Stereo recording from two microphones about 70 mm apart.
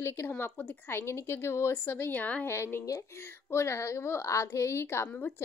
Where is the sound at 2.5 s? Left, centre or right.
Left.